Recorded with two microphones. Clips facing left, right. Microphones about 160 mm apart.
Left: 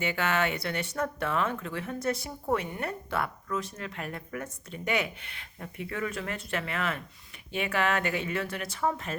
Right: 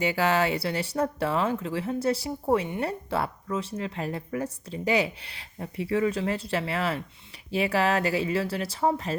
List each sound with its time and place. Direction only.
0.0 s speech: 35° right (ahead or behind)